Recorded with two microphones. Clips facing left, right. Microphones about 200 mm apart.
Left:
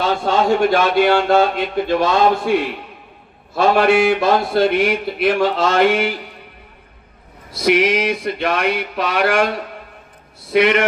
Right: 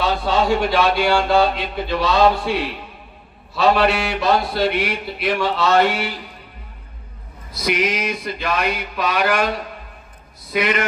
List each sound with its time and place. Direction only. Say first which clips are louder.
0.0 s speech: left 2 dB; 50° left (ahead or behind)
7.6 s speech: left 6 dB; 60° left (ahead or behind)
10.5 s speech: left 6 dB; 60° left (ahead or behind)